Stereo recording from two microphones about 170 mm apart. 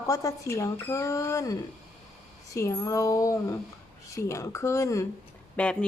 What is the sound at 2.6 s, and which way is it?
Speech, 15° left (ahead or behind).